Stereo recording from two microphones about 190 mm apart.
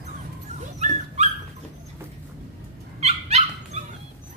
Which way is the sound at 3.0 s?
35° right (ahead or behind).